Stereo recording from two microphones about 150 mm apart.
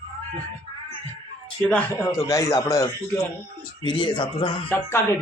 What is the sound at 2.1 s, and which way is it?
Speech, 25° left (ahead or behind).